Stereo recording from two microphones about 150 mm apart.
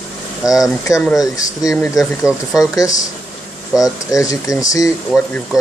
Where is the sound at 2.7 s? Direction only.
25° left (ahead or behind).